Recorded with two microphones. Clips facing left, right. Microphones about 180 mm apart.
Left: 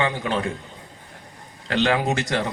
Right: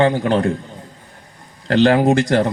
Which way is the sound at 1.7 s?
40° right (ahead or behind).